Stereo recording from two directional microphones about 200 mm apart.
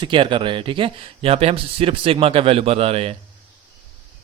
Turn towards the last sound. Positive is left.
turn(degrees=-30)  # may be behind; listen again after turning